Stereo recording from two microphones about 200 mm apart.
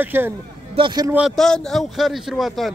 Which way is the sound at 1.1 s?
Centre (ahead or behind).